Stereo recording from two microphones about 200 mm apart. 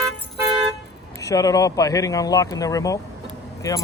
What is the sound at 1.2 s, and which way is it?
Speech, 15° left (ahead or behind).